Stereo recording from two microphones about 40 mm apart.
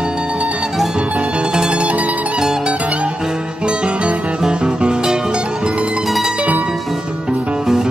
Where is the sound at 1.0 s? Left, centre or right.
Right.